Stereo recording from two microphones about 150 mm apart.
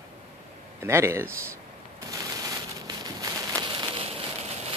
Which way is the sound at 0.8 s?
20° right (ahead or behind).